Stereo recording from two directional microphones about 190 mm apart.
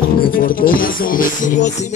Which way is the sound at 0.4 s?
50° left (ahead or behind).